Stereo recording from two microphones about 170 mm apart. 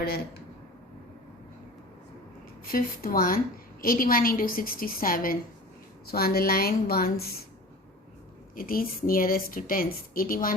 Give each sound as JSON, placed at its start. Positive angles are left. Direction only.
{"t": 0.0, "sound": "a woman's voice", "side_deg": 65}
{"t": 2.7, "sound": "a woman's voice", "side_deg": 60}
{"t": 8.5, "sound": "a woman's voice", "side_deg": 60}